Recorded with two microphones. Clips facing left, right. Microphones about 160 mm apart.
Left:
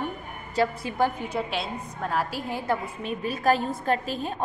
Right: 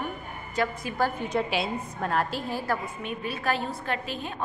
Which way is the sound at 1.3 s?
Centre (ahead or behind).